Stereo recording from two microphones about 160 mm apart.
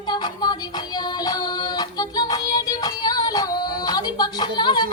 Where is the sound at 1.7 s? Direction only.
25° left (ahead or behind).